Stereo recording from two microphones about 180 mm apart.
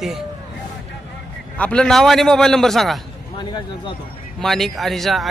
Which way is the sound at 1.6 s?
5° left (ahead or behind).